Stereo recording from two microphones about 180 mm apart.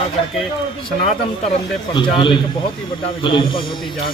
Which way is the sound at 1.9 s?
25° left (ahead or behind).